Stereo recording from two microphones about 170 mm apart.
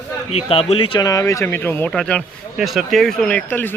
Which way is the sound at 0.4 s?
35° left (ahead or behind).